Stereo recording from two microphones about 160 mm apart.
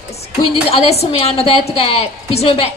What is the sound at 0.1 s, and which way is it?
A woman's voice, 40° left (ahead or behind).